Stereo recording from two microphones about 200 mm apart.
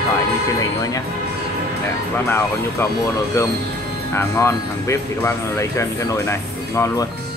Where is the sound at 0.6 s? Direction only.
20° left (ahead or behind).